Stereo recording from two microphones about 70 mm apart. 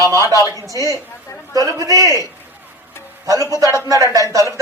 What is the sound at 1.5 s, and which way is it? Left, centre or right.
Speech, right.